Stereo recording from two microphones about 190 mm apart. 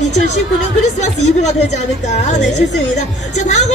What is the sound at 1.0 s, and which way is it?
A woman's voice, 35° left (ahead or behind).